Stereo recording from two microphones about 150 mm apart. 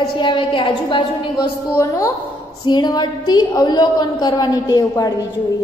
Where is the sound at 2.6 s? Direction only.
30° left (ahead or behind).